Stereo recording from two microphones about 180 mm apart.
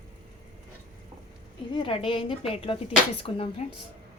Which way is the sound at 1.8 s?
30° left (ahead or behind).